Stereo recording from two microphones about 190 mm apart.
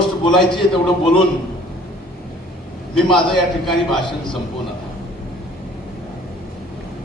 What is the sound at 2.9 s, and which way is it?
Speech, centre (ahead or behind).